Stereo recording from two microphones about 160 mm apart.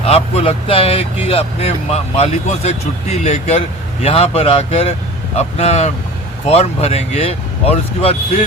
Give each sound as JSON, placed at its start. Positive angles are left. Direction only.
{"t": 0.0, "sound": "speech", "side_deg": 40}